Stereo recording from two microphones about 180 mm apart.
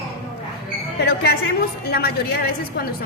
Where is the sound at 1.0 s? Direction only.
60° left (ahead or behind).